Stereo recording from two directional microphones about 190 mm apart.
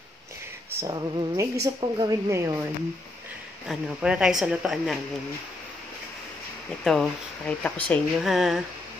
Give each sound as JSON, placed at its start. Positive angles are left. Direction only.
{"t": 0.7, "sound": "a woman's voice", "side_deg": -15}
{"t": 3.6, "sound": "speech", "side_deg": -5}
{"t": 6.8, "sound": "speech", "side_deg": 0}